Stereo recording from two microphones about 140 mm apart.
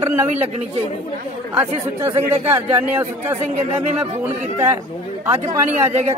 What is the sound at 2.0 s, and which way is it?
A man's voice, 20° right (ahead or behind).